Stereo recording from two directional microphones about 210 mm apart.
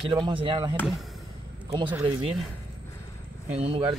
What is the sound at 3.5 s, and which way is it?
Speech, 25° right (ahead or behind).